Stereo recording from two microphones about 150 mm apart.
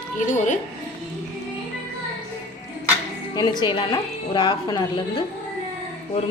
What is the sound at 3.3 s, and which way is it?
A woman's voice, 30° left (ahead or behind).